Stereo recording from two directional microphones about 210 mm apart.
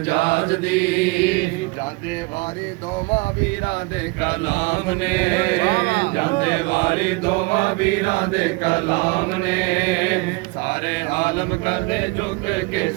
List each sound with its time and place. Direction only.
0.1 s mantra: 55° left (ahead or behind)
4.2 s mantra: 55° left (ahead or behind)
11.1 s mantra: 55° left (ahead or behind)